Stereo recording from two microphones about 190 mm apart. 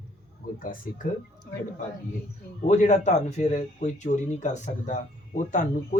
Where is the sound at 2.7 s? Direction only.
40° left (ahead or behind).